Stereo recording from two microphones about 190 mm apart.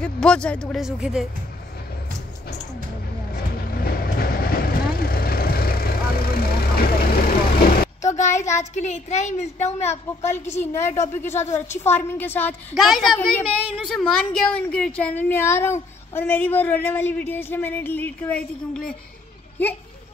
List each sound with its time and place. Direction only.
0.0 s speech: 5° left (ahead or behind)
3.3 s vehicle: 50° left (ahead or behind)
8.4 s a woman's voice: 15° left (ahead or behind)
8.7 s a woman's voice: 35° left (ahead or behind)
10.3 s a woman's voice: 10° left (ahead or behind)